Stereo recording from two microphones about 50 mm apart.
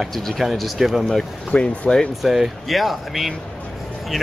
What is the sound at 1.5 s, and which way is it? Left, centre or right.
Speech, centre.